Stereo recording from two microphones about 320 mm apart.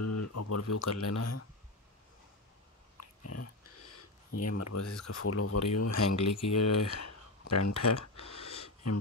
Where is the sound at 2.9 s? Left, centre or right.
Left.